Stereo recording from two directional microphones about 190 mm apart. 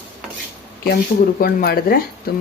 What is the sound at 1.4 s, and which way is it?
Speech, 50° left (ahead or behind).